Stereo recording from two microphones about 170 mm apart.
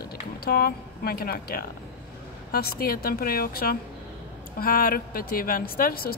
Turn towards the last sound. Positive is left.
turn(degrees=60)  # may be behind; listen again after turning